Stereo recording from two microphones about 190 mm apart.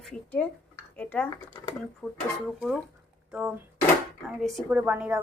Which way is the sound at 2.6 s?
Centre (ahead or behind).